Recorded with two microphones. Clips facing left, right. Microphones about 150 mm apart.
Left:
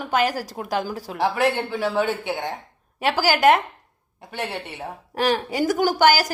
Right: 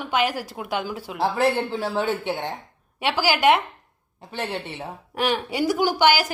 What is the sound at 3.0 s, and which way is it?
Speech, 45° left (ahead or behind).